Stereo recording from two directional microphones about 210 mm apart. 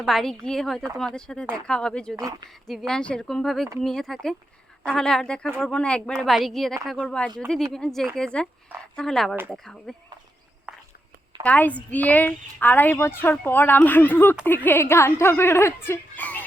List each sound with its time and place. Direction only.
0.0 s speech: centre (ahead or behind)
2.1 s speech: 15° right (ahead or behind)
2.6 s speech: centre (ahead or behind)
9.3 s speech: 10° right (ahead or behind)
9.6 s speech: centre (ahead or behind)
10.7 s walk: 5° right (ahead or behind)
11.4 s a woman's voice: 5° left (ahead or behind)